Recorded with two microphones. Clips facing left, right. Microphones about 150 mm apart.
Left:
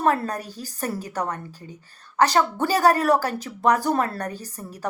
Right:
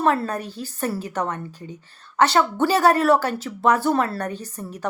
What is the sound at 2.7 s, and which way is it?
Speech, 35° left (ahead or behind).